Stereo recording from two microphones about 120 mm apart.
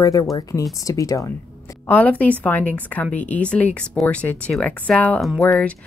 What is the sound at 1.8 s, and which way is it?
A woman's voice, 15° left (ahead or behind).